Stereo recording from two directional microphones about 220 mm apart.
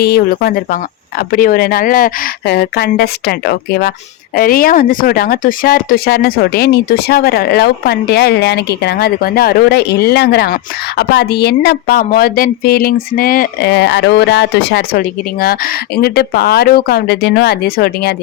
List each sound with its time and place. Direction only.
0.0 s speech: 45° left (ahead or behind)